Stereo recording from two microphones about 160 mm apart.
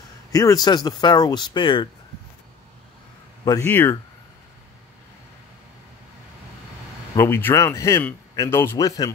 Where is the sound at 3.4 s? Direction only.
20° left (ahead or behind).